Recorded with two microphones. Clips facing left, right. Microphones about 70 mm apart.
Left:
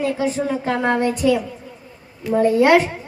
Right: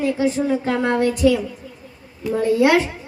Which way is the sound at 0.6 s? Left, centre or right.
Left.